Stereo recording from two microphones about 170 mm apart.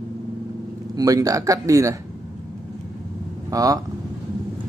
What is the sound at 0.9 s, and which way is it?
Speech, 20° right (ahead or behind).